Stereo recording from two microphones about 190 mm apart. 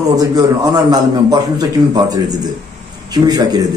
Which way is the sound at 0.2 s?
20° right (ahead or behind).